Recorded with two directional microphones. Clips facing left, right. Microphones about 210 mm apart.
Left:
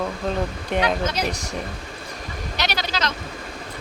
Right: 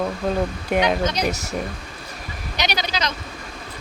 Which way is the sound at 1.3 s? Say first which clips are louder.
Right 2 dB; 5° right (ahead or behind).